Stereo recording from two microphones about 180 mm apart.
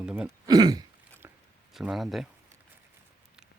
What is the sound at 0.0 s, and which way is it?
Speech, 5° right (ahead or behind).